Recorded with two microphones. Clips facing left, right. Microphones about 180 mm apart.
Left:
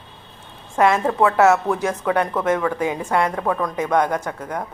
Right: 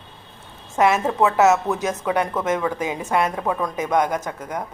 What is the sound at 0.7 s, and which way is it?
A woman's voice, 15° right (ahead or behind).